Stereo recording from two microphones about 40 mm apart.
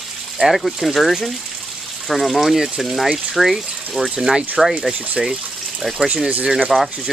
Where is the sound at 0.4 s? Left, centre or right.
Centre.